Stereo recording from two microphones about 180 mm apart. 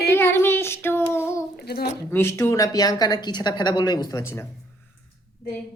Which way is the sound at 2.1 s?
15° left (ahead or behind).